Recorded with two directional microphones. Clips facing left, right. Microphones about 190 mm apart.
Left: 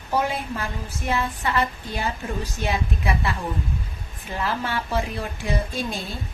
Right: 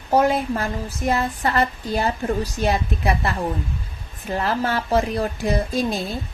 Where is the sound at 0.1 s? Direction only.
45° right (ahead or behind).